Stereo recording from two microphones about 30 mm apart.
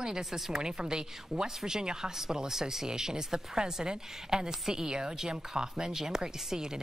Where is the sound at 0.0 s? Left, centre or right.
Right.